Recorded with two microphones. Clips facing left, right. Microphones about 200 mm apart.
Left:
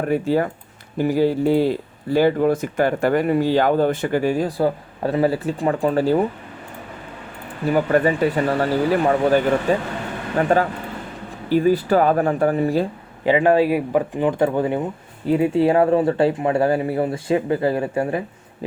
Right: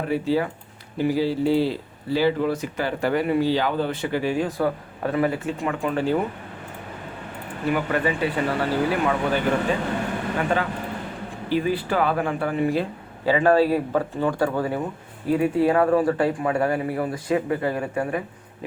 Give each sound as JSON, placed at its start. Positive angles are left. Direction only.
{"t": 0.1, "sound": "speech", "side_deg": 50}
{"t": 7.7, "sound": "speech", "side_deg": 40}
{"t": 10.5, "sound": "speech", "side_deg": 40}
{"t": 13.2, "sound": "speech", "side_deg": 20}